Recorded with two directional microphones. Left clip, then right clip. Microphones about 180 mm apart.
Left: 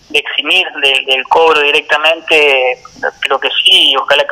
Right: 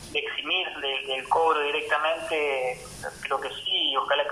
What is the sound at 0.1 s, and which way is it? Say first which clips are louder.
Speech: left 16 dB; 40° left (ahead or behind).